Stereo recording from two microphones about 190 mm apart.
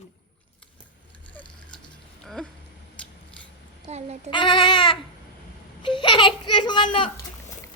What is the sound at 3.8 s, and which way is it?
Speech, 35° right (ahead or behind).